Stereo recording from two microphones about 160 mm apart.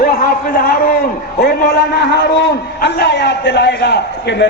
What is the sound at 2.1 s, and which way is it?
A man's voice, 90° left.